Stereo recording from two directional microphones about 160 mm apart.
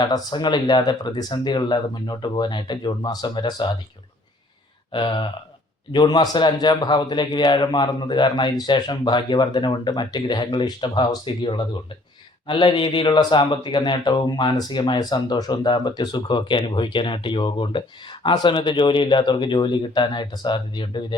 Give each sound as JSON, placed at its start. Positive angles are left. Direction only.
{"t": 0.0, "sound": "speech", "side_deg": 25}
{"t": 4.9, "sound": "speech", "side_deg": 30}